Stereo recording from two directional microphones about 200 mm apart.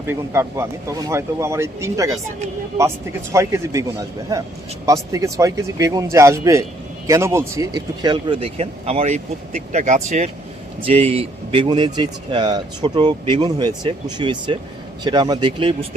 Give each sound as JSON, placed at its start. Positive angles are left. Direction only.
{"t": 0.1, "sound": "speech", "side_deg": -15}
{"t": 3.3, "sound": "speech", "side_deg": -15}
{"t": 4.9, "sound": "speech", "side_deg": -15}